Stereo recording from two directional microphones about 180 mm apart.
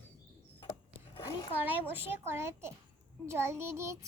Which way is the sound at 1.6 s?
10° right (ahead or behind).